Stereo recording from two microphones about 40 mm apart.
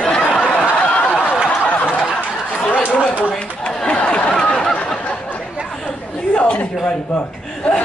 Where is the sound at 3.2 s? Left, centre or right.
Left.